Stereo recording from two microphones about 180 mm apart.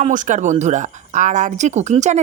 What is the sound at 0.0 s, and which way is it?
Speech, 45° right (ahead or behind).